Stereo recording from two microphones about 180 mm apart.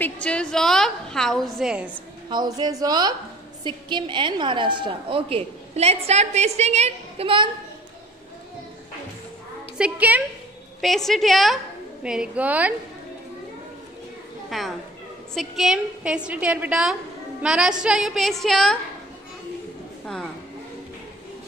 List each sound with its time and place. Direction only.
0.0 s a woman's voice: 5° left (ahead or behind)
2.2 s a woman's voice: 25° right (ahead or behind)
9.8 s a woman's voice: 5° right (ahead or behind)
14.5 s a woman's voice: centre (ahead or behind)